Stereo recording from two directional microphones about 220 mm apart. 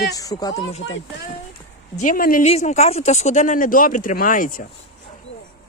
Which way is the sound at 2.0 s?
40° left (ahead or behind).